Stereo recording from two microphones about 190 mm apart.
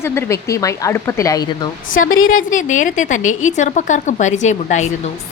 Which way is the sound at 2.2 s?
45° left (ahead or behind).